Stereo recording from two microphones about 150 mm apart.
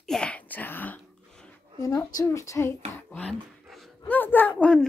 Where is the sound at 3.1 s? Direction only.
10° left (ahead or behind).